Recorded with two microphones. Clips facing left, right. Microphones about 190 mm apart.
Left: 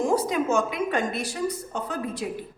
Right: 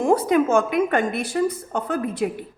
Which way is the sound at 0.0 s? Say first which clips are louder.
Right 5 dB; 60° right (ahead or behind).